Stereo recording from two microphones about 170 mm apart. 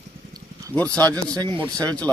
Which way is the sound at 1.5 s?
25° right (ahead or behind).